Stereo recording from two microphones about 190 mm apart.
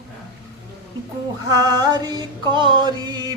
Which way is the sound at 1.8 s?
20° right (ahead or behind).